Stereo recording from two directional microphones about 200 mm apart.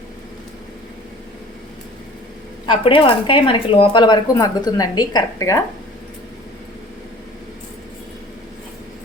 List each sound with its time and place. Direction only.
2.6 s speech: 25° left (ahead or behind)